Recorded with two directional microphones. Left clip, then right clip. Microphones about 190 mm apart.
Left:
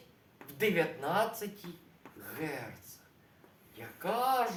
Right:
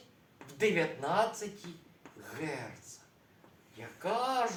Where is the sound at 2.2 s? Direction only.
20° left (ahead or behind).